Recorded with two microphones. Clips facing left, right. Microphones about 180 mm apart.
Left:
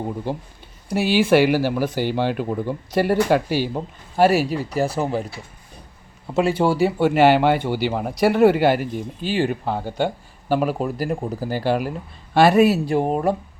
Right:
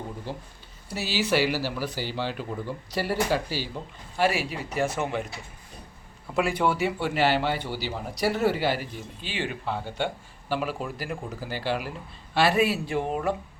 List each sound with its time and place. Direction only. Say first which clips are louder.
0.3 s speech: left 9 dB; 55° left (ahead or behind); by 7.1 s 35° left (ahead or behind)
7.1 s speech: left 9 dB; 55° left (ahead or behind)